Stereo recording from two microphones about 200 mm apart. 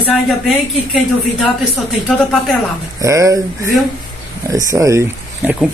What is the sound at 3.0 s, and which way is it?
Speech, 15° right (ahead or behind).